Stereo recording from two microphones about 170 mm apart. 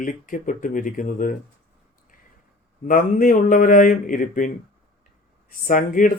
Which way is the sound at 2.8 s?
55° left (ahead or behind).